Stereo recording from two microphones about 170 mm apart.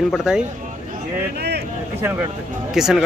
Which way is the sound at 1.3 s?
75° right (ahead or behind).